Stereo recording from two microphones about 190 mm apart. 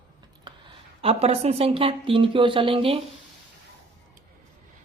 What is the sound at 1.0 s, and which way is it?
A woman's voice, 35° right (ahead or behind).